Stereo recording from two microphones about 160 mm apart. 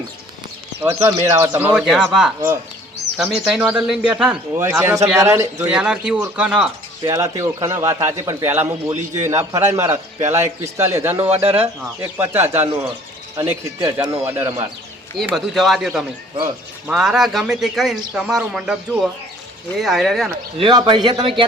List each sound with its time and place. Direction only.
0.8 s a man's voice: 15° right (ahead or behind)
1.6 s a man's voice: 5° right (ahead or behind)
7.0 s a man's voice: 20° right (ahead or behind)
15.4 s speech: centre (ahead or behind)
20.6 s a man's voice: 30° right (ahead or behind)